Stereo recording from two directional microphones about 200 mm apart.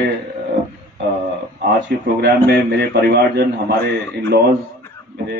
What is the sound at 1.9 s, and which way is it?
A man's voice, 60° right (ahead or behind).